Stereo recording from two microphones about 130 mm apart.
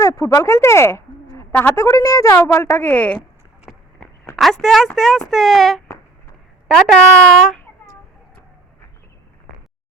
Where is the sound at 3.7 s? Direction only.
Centre (ahead or behind).